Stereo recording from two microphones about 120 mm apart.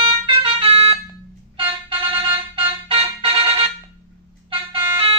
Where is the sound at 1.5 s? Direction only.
50° right (ahead or behind).